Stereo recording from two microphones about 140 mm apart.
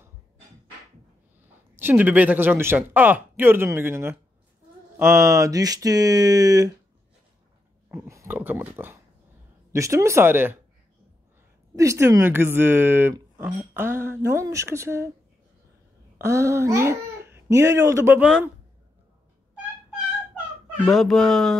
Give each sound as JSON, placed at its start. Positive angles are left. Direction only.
{"t": 1.8, "sound": "speech", "side_deg": -15}
{"t": 7.9, "sound": "speech", "side_deg": -20}
{"t": 11.7, "sound": "speech", "side_deg": -20}
{"t": 16.2, "sound": "speech", "side_deg": -20}
{"t": 20.8, "sound": "speech", "side_deg": 0}